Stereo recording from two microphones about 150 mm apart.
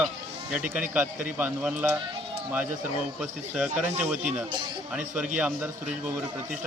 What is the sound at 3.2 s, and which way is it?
Speech, 5° right (ahead or behind).